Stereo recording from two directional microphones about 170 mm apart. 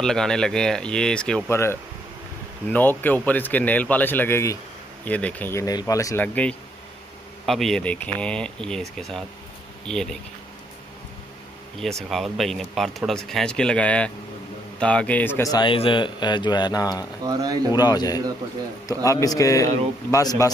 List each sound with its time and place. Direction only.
0.0 s a man's voice: 5° left (ahead or behind); by 6.2 s 20° left (ahead or behind)
6.2 s a man's voice: 10° left (ahead or behind)
9.8 s speech: 5° left (ahead or behind)
11.8 s a man's voice: centre (ahead or behind); by 17.1 s 20° left (ahead or behind)
17.2 s speech: 20° right (ahead or behind)
17.6 s a man's voice: 25° left (ahead or behind)